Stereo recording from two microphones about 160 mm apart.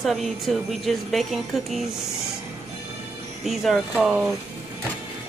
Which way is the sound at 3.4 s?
Centre (ahead or behind).